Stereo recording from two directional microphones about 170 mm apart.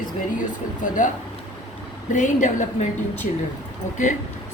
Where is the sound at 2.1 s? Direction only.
45° left (ahead or behind).